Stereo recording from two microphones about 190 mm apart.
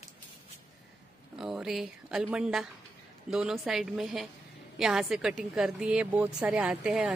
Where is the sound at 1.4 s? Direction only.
5° right (ahead or behind).